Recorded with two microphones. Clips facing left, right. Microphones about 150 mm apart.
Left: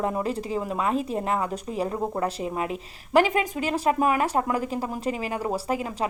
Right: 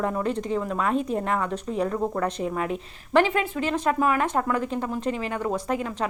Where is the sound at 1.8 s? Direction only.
20° left (ahead or behind).